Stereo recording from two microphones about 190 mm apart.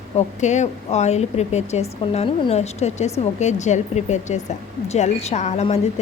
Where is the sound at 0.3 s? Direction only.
40° left (ahead or behind).